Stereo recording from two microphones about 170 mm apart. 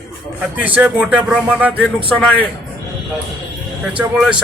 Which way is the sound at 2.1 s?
10° left (ahead or behind).